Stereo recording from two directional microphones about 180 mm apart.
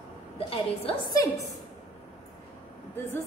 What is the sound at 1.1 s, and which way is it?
Speech, 20° left (ahead or behind).